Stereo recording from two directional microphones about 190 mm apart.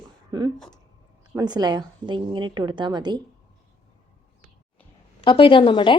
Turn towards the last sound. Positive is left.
turn(degrees=25)  # may be behind; listen again after turning